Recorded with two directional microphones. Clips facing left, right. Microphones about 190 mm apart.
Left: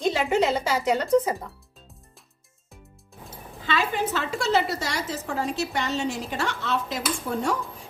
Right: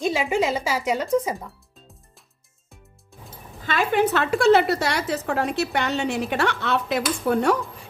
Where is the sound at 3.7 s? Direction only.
60° right (ahead or behind).